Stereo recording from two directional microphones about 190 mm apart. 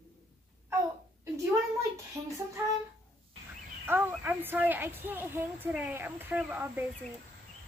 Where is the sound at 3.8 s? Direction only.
10° right (ahead or behind).